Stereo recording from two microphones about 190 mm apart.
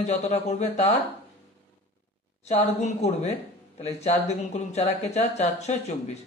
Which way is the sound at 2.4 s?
35° left (ahead or behind).